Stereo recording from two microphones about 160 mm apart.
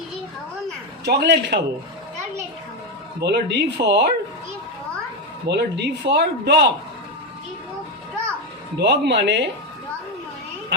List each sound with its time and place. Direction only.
1.0 s speech: 90° right
3.2 s speech: 90° right
5.5 s speech: 90° right
8.8 s speech: 90° right